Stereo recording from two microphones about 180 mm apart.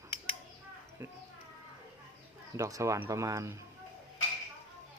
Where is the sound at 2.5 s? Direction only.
15° right (ahead or behind).